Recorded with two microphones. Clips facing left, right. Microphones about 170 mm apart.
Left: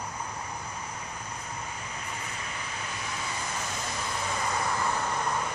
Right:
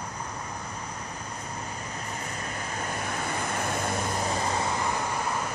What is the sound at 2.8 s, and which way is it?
Vehicle, 50° right (ahead or behind).